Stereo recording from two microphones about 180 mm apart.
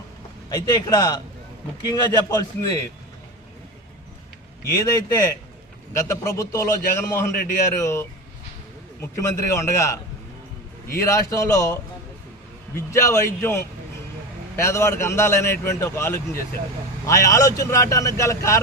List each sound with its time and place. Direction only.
0.5 s a man's voice: 20° left (ahead or behind)
4.7 s a man's voice: 20° left (ahead or behind)
11.0 s speech: 15° left (ahead or behind)